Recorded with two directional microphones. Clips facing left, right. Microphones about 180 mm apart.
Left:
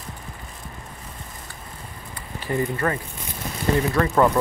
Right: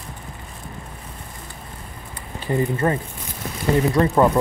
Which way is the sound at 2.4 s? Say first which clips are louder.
Right 3 dB; 25° right (ahead or behind).